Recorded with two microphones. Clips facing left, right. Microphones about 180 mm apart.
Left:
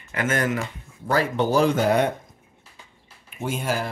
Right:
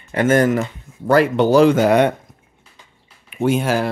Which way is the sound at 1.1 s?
75° right (ahead or behind).